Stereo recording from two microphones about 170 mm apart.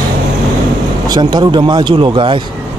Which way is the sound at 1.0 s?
25° right (ahead or behind).